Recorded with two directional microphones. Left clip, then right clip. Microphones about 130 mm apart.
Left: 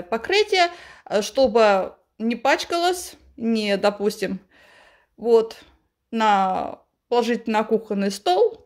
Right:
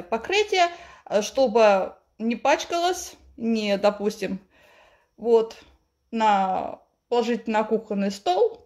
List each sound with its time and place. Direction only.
0.1 s a woman's voice: 35° left (ahead or behind)